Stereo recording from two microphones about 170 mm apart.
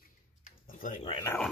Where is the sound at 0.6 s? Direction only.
50° left (ahead or behind).